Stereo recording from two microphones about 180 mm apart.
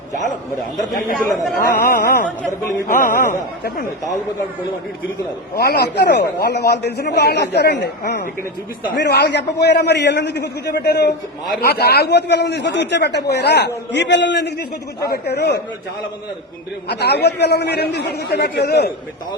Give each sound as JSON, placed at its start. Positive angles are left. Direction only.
{"t": 0.8, "sound": "speech", "side_deg": 0}
{"t": 1.5, "sound": "a man's voice", "side_deg": 55}
{"t": 5.5, "sound": "a man's voice", "side_deg": 60}
{"t": 15.1, "sound": "a man's voice", "side_deg": 65}
{"t": 17.0, "sound": "a man's voice", "side_deg": 65}